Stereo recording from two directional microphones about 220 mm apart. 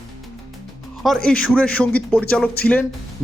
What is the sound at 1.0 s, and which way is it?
Speech, centre (ahead or behind).